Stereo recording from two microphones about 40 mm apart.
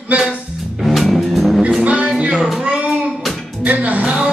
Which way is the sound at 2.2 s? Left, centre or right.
Right.